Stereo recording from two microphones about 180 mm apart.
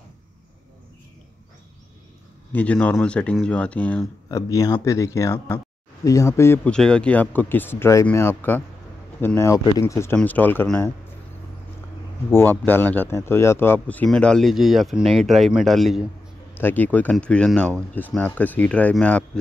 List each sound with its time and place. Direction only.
2.5 s speech: 10° left (ahead or behind)
4.3 s speech: 20° left (ahead or behind)
12.3 s speech: 10° left (ahead or behind)